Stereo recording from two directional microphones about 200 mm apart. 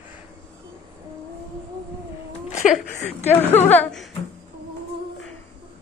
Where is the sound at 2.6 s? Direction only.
35° left (ahead or behind).